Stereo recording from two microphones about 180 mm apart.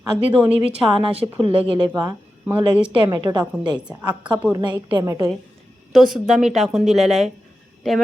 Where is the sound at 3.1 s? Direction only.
25° right (ahead or behind).